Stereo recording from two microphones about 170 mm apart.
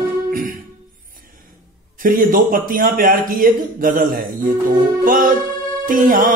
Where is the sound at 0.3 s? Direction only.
55° right (ahead or behind).